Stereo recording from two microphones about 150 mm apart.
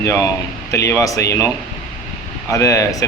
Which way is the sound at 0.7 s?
20° left (ahead or behind).